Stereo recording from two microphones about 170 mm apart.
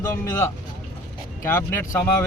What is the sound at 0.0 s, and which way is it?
Speech, 15° left (ahead or behind).